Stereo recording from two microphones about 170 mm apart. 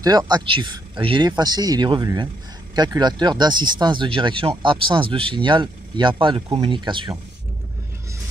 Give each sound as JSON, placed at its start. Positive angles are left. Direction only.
{"t": 0.0, "sound": "speech", "side_deg": -25}